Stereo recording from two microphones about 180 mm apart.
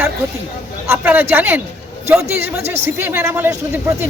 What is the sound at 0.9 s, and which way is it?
A man's voice, 10° right (ahead or behind).